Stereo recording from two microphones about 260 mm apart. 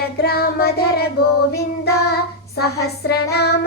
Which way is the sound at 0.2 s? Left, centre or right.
Left.